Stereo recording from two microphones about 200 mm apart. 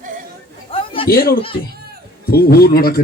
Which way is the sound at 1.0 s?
50° left (ahead or behind).